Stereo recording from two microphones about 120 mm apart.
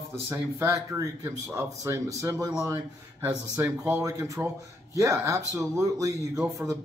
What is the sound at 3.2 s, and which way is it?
A man's voice, 25° right (ahead or behind).